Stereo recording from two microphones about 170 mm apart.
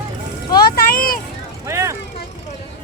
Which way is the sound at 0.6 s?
60° left (ahead or behind).